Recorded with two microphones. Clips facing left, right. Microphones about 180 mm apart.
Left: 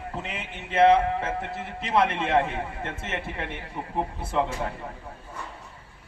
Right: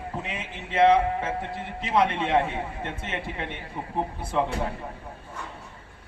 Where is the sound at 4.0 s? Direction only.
Centre (ahead or behind).